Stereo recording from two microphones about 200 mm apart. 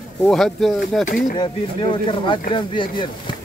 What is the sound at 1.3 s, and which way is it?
Speech, 25° left (ahead or behind).